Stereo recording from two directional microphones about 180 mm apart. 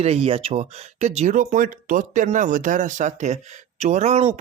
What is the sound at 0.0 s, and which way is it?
Speech, 35° right (ahead or behind).